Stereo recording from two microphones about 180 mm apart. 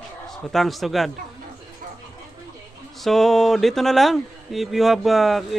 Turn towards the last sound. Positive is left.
turn(degrees=0)  # may be behind; listen again after turning